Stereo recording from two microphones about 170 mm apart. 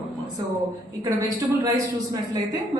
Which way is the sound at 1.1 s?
20° right (ahead or behind).